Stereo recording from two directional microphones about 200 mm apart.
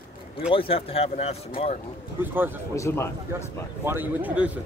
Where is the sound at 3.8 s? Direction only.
10° right (ahead or behind).